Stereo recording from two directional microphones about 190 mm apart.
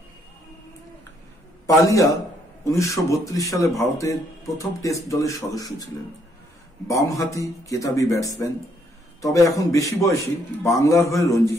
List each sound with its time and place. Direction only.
2.7 s a man's voice: 15° left (ahead or behind)
6.9 s a man's voice: 15° left (ahead or behind)